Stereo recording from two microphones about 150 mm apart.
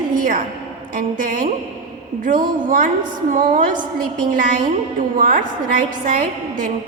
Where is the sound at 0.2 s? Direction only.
65° right (ahead or behind).